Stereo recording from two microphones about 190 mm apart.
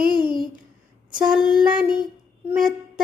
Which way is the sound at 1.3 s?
Centre (ahead or behind).